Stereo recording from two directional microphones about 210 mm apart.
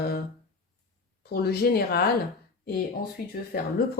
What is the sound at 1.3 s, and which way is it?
Speech, 50° left (ahead or behind).